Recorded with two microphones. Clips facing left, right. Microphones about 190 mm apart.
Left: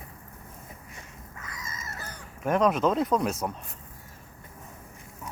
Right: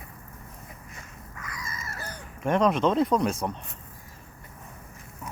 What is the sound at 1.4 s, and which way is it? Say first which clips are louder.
Dog: right 3 dB; 25° left (ahead or behind).